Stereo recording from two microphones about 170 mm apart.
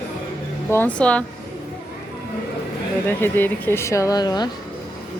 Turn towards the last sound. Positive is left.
turn(degrees=25)  # may be behind; listen again after turning